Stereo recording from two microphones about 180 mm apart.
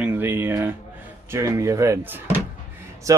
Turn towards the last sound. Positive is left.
turn(degrees=-15)  # may be behind; listen again after turning